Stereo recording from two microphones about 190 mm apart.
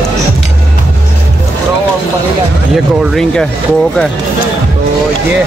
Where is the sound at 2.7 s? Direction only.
Centre (ahead or behind).